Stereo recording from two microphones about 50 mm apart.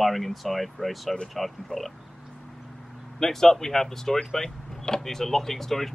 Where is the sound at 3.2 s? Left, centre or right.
Centre.